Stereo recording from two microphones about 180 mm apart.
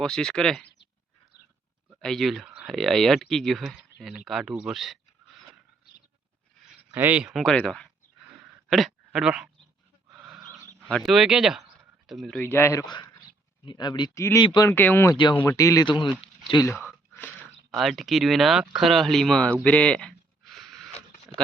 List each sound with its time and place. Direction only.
0.0 s speech: 5° left (ahead or behind)
0.6 s a sound: 75° left (ahead or behind)
2.0 s speech: 5° left (ahead or behind)
6.9 s speech: 10° right (ahead or behind)
10.1 s wild animals: 10° right (ahead or behind)
10.4 s a sound: 15° right (ahead or behind)
10.8 s speech: centre (ahead or behind)
12.9 s a sound: 20° left (ahead or behind)
13.7 s speech: 25° left (ahead or behind)
15.1 s speech: 25° left (ahead or behind)
17.1 s chewing: 10° left (ahead or behind)
17.7 s speech: centre (ahead or behind)
19.6 s a sound: 5° left (ahead or behind)